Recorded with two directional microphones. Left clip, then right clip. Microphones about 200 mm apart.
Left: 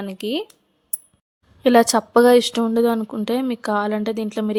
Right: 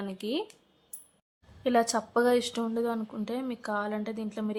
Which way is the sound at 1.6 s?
50° left (ahead or behind).